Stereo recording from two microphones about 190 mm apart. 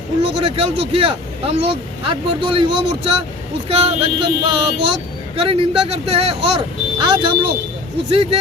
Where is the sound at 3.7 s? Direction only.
35° right (ahead or behind).